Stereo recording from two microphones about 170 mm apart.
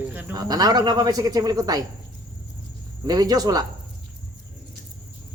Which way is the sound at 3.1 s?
25° right (ahead or behind).